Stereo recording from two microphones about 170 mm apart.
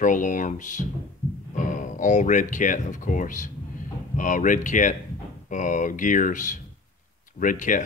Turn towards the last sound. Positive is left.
turn(degrees=50)  # may be behind; listen again after turning